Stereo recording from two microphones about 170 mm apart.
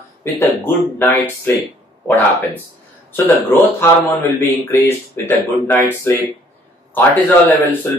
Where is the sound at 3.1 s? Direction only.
15° left (ahead or behind).